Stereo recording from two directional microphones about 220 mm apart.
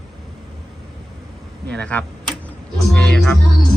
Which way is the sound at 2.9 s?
5° left (ahead or behind).